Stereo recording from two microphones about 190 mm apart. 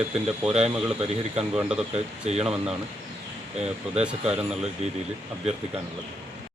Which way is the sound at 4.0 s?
5° right (ahead or behind).